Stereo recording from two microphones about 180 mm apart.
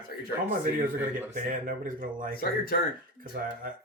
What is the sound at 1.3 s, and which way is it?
Speech, 50° right (ahead or behind).